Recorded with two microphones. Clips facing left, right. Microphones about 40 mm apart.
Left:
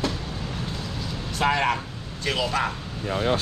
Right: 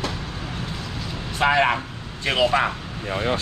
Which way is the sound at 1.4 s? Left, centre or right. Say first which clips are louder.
Right 4 dB; right.